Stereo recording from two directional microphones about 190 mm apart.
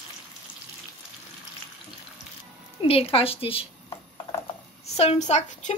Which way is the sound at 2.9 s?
30° left (ahead or behind).